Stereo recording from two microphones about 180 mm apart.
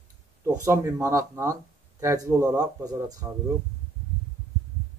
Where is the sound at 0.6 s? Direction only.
15° right (ahead or behind).